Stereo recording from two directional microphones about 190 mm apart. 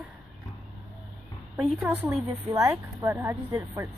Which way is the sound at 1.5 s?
5° right (ahead or behind).